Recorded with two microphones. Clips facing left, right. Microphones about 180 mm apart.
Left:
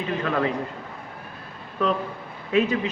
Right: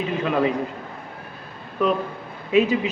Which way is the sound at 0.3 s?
15° right (ahead or behind).